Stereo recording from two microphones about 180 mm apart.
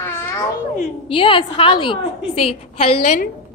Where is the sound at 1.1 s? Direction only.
30° left (ahead or behind).